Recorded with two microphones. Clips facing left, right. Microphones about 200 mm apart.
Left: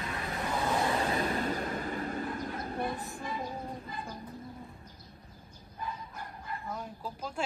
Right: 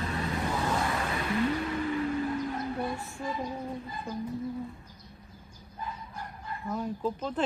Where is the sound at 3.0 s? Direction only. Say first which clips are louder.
Right 1 dB; 15° left (ahead or behind).